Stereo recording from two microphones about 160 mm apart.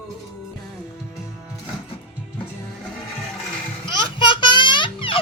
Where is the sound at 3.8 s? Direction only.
30° left (ahead or behind).